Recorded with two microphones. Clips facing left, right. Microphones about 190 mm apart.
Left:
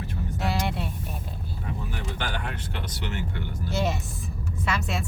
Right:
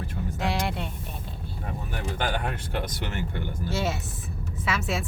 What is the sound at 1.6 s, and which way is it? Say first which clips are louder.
Vehicle: right 1 dB; 50° right (ahead or behind).